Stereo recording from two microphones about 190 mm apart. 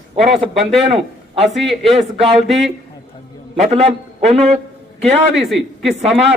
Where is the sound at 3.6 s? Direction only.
35° right (ahead or behind).